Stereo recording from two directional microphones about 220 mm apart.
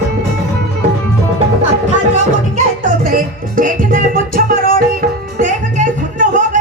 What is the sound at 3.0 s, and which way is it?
Music, 35° right (ahead or behind).